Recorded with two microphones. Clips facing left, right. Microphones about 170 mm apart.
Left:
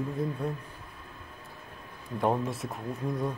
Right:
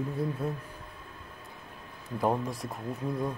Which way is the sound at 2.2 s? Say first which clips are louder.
Left 1 dB; centre (ahead or behind).